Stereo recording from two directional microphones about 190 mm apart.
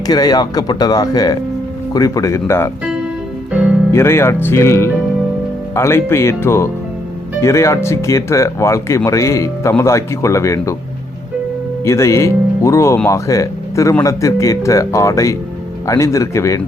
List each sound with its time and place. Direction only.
0.1 s speech: 20° left (ahead or behind)
3.9 s speech: 15° left (ahead or behind)
11.9 s speech: 15° left (ahead or behind)